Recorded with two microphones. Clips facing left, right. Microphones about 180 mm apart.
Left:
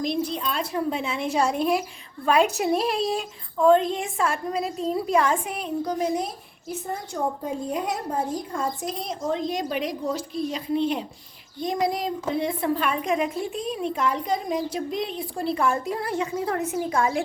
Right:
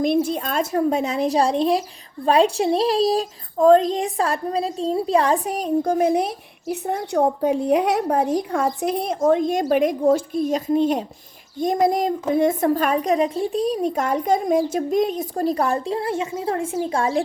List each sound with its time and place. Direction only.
0.0 s a woman's voice: 50° right (ahead or behind); by 17.2 s 30° right (ahead or behind)